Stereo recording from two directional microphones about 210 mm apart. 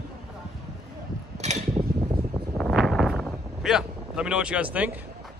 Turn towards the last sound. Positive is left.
turn(degrees=-5)  # may be behind; listen again after turning